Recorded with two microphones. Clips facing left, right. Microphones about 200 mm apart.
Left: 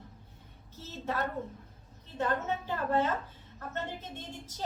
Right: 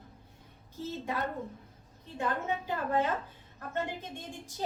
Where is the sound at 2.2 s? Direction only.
10° right (ahead or behind).